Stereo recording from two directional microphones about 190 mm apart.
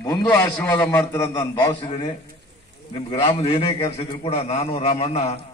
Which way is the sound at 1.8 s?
30° left (ahead or behind).